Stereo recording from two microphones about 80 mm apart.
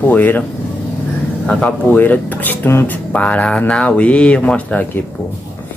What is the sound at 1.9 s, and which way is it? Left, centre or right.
A man's voice, left.